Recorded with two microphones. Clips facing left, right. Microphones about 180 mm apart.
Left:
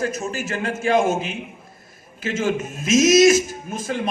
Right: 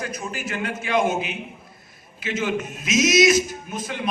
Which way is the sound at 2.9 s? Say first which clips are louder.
Left 4 dB; 50° left (ahead or behind).